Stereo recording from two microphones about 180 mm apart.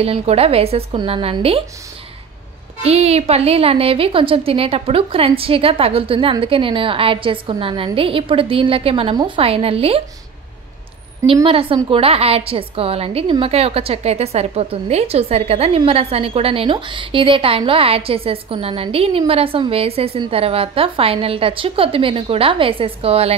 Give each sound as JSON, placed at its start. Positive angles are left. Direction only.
{"t": 0.0, "sound": "a woman's voice", "side_deg": -35}
{"t": 2.8, "sound": "a woman's voice", "side_deg": -35}
{"t": 11.4, "sound": "a woman's voice", "side_deg": -30}